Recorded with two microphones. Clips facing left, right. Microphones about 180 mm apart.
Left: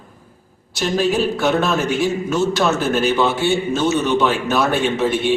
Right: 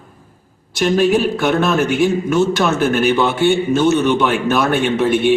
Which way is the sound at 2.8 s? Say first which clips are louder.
Right 3 dB; 60° right (ahead or behind).